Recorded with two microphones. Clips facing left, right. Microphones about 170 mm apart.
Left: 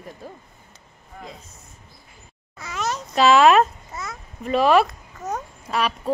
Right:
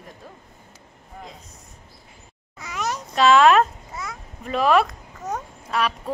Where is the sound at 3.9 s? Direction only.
10° right (ahead or behind).